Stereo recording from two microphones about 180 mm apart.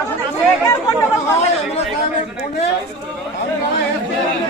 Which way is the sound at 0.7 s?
15° left (ahead or behind).